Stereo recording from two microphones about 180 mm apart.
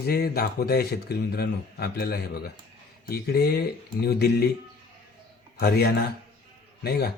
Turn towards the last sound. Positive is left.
turn(degrees=60)  # may be behind; listen again after turning